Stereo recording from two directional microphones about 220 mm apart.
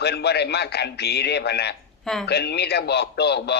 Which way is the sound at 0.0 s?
50° left (ahead or behind).